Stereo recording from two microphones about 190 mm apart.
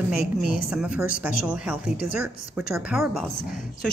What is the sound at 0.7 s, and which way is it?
A woman's voice, 5° right (ahead or behind).